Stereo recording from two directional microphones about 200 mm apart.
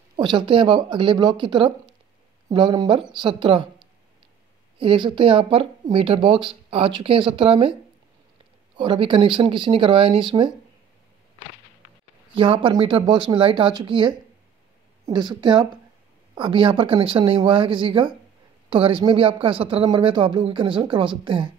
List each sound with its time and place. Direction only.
0.1 s speech: 25° right (ahead or behind)
4.7 s speech: 25° right (ahead or behind)
8.7 s speech: 25° right (ahead or behind)
12.4 s speech: 25° right (ahead or behind)